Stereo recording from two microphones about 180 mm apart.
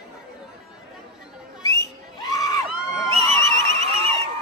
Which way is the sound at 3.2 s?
30° right (ahead or behind).